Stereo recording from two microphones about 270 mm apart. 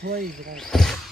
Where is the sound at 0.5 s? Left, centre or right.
Centre.